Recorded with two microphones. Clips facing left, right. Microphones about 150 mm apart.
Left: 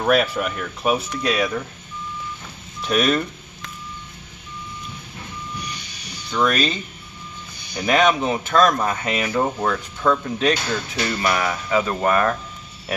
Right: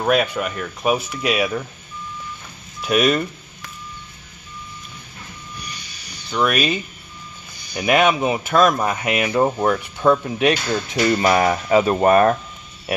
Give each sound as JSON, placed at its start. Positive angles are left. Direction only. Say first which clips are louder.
{"t": 0.0, "sound": "speech", "louder": "even", "side_deg": -5}
{"t": 2.8, "sound": "telephone dialing", "louder": "right 2 dB", "side_deg": -5}
{"t": 6.3, "sound": "speech", "louder": "right 1 dB", "side_deg": -10}
{"t": 11.1, "sound": "speech", "louder": "right 6 dB", "side_deg": -25}